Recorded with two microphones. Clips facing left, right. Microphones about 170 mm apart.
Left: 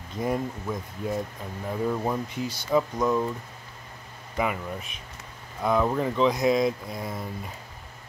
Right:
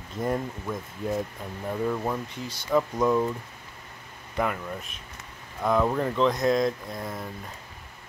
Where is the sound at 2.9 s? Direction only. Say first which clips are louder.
Right 1 dB; 5° right (ahead or behind).